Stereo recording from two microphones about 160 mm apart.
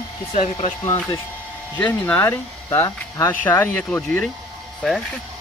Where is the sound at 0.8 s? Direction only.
20° left (ahead or behind).